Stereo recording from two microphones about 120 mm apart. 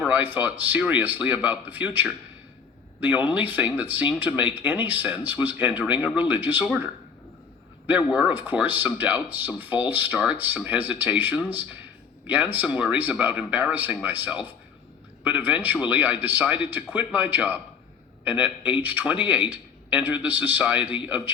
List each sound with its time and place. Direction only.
0.1 s speech: 15° right (ahead or behind)